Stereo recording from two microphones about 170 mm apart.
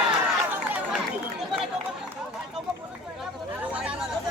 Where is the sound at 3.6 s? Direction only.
5° right (ahead or behind).